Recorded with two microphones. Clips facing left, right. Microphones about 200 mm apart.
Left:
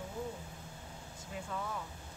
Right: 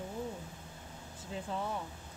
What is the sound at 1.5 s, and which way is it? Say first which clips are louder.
Speech: right 3 dB; 30° right (ahead or behind).